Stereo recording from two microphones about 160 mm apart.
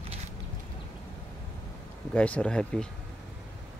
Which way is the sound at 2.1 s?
10° left (ahead or behind).